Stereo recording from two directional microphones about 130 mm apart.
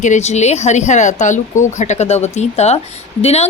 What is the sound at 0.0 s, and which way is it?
Speech, 65° left (ahead or behind).